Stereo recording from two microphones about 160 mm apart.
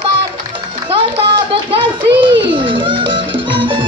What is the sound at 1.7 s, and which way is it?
Children playing, 30° right (ahead or behind).